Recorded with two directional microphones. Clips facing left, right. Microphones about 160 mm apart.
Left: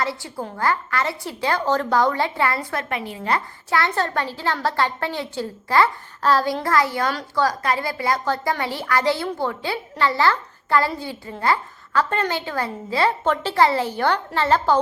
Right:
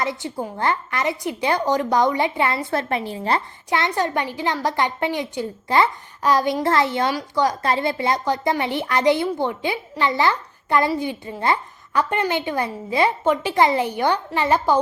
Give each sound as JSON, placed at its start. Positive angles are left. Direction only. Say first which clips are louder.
{"t": 0.0, "sound": "a woman's voice", "louder": "right 1 dB", "side_deg": -20}
{"t": 2.6, "sound": "a woman's voice", "louder": "right 4 dB", "side_deg": -30}
{"t": 3.7, "sound": "a child's voice", "louder": "right 1 dB", "side_deg": -20}
{"t": 7.6, "sound": "a woman's voice", "louder": "right 2 dB", "side_deg": -25}